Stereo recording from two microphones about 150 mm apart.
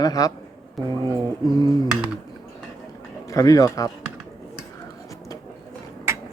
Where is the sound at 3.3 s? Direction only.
25° left (ahead or behind).